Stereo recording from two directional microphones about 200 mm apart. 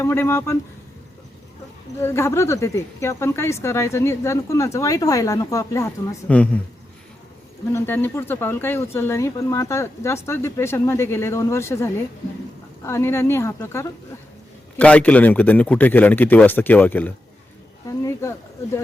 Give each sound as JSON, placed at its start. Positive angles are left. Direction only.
{"t": 0.0, "sound": "a woman's voice", "side_deg": 10}
{"t": 2.0, "sound": "a woman's voice", "side_deg": 15}
{"t": 7.7, "sound": "a woman's voice", "side_deg": 10}